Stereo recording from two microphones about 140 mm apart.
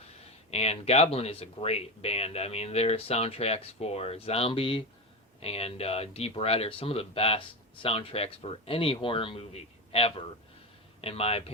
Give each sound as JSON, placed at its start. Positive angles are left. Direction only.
{"t": 0.5, "sound": "speech", "side_deg": 45}